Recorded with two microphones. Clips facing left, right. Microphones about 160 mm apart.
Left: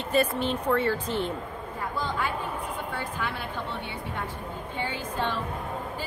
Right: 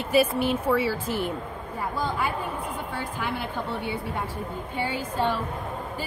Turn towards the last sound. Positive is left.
turn(degrees=-10)  # may be behind; listen again after turning